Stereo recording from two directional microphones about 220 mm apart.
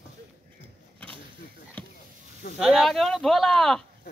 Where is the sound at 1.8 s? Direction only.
10° left (ahead or behind).